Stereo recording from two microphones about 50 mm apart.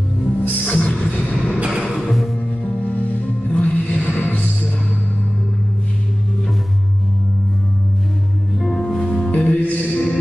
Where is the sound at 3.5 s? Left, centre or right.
Left.